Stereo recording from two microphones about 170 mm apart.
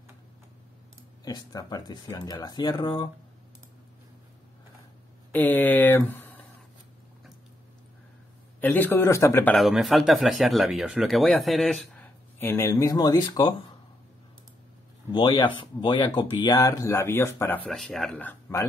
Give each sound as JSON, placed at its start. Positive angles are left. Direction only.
{"t": 1.2, "sound": "speech", "side_deg": 20}
{"t": 5.3, "sound": "speech", "side_deg": 10}
{"t": 8.5, "sound": "speech", "side_deg": 10}
{"t": 9.6, "sound": "speech", "side_deg": 0}
{"t": 15.1, "sound": "speech", "side_deg": 25}
{"t": 17.6, "sound": "speech", "side_deg": 0}